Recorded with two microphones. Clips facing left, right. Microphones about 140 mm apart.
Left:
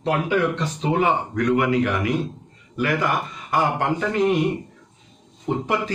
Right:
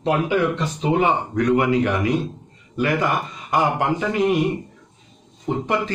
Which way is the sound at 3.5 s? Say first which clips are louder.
Right 2 dB; 15° right (ahead or behind).